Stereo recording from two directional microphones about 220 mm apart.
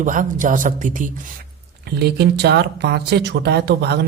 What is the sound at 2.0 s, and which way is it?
Speech, 45° right (ahead or behind).